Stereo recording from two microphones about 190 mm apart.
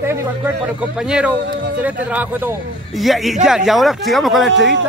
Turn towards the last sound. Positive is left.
turn(degrees=-75)  # may be behind; listen again after turning